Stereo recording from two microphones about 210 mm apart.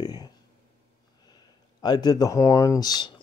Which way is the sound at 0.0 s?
20° left (ahead or behind).